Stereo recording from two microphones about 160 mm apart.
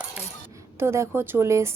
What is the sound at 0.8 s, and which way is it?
Speech, 15° right (ahead or behind).